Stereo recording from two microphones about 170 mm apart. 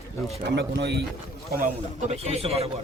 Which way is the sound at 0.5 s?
85° right.